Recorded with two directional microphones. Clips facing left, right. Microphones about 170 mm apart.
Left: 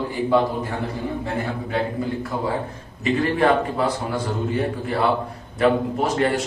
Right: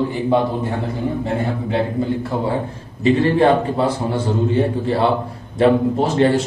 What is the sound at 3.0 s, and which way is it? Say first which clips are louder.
A man's voice: right 5 dB; 30° right (ahead or behind).